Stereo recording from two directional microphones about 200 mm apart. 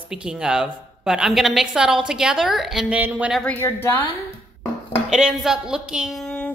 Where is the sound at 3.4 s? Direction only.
10° left (ahead or behind).